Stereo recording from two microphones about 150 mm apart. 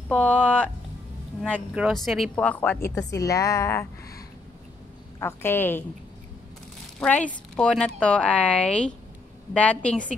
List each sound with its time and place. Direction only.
0.1 s speech: 5° left (ahead or behind)
1.8 s a woman's voice: centre (ahead or behind); by 4.2 s 20° left (ahead or behind)
5.2 s speech: 15° left (ahead or behind)
7.0 s a woman's voice: 10° left (ahead or behind)